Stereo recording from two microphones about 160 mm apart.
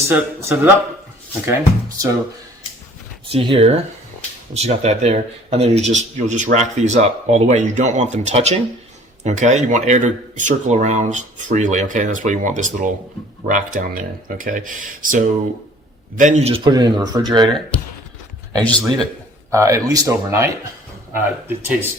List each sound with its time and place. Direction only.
0.0 s speech: 15° right (ahead or behind)
3.3 s speech: 40° right (ahead or behind)
16.6 s speech: 25° right (ahead or behind)
19.5 s speech: 20° right (ahead or behind)